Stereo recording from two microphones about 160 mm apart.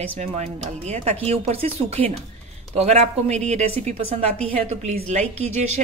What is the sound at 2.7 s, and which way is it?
A woman's voice, 40° right (ahead or behind).